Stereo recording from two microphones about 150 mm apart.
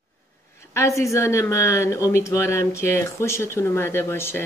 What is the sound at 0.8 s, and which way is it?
Speech, 20° left (ahead or behind).